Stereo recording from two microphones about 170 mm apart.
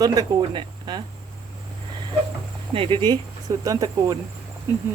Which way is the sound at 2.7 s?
30° right (ahead or behind).